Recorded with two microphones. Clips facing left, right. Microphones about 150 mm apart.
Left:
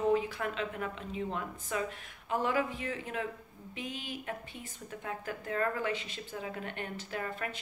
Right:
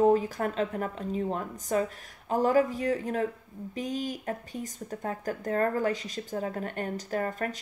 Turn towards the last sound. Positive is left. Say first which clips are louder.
# right 7 dB
turn(degrees=-40)  # may be behind; listen again after turning